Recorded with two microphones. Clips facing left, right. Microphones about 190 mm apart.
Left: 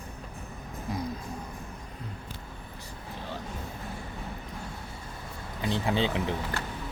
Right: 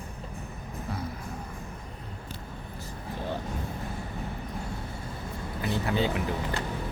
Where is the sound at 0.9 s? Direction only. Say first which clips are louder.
Left 3 dB; 15° left (ahead or behind).